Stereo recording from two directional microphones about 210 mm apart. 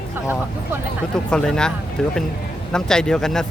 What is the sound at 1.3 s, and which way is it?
Speech, 5° left (ahead or behind).